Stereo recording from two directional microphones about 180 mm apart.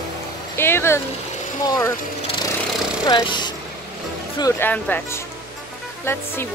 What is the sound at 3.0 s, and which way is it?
Speech, 25° left (ahead or behind).